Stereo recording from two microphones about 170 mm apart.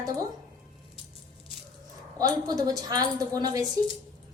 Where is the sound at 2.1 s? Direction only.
20° right (ahead or behind).